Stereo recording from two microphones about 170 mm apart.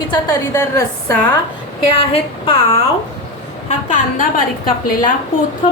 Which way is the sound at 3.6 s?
50° left (ahead or behind).